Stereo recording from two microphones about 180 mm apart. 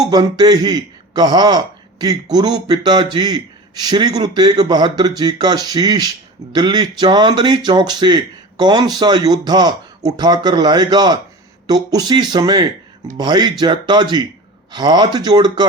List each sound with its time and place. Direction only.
0.0 s speech: 20° right (ahead or behind)